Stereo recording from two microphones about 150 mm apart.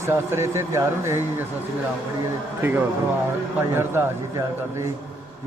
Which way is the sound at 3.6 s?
15° right (ahead or behind).